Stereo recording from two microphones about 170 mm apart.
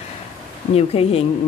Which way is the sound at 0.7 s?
35° left (ahead or behind).